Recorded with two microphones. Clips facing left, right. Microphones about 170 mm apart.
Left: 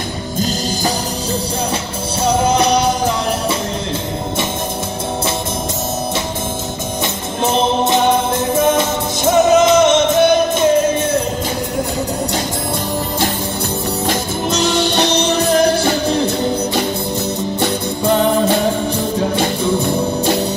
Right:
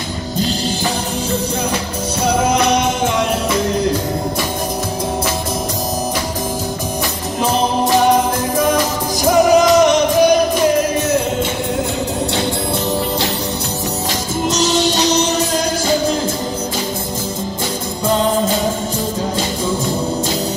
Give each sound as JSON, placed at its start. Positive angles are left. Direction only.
{"t": 0.4, "sound": "music", "side_deg": 45}
{"t": 2.2, "sound": "music", "side_deg": 30}
{"t": 7.4, "sound": "music", "side_deg": 25}
{"t": 14.5, "sound": "music", "side_deg": 60}
{"t": 18.1, "sound": "music", "side_deg": 65}